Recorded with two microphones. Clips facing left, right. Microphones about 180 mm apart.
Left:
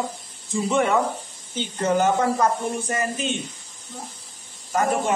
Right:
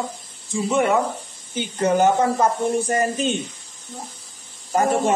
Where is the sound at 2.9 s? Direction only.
35° right (ahead or behind).